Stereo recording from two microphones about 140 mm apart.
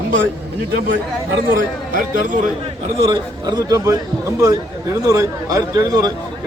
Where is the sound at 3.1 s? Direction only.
30° right (ahead or behind).